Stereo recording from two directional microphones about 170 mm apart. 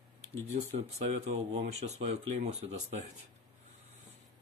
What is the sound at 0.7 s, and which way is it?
Speech, 40° right (ahead or behind).